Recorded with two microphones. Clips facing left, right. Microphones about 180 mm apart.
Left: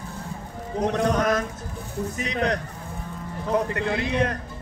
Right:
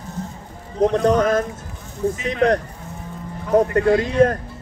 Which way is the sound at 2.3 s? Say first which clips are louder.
Right 8 dB; 45° right (ahead or behind).